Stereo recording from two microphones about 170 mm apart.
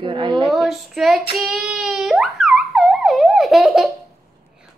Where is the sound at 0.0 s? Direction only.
25° right (ahead or behind).